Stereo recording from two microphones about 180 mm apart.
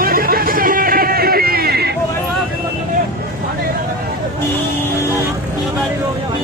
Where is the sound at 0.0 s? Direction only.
55° right (ahead or behind).